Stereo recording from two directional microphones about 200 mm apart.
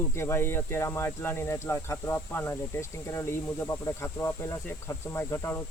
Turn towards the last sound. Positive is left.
turn(degrees=15)  # may be behind; listen again after turning